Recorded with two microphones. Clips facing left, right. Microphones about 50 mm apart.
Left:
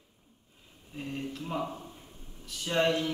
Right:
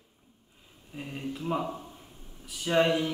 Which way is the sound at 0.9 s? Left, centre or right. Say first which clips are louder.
Even; centre.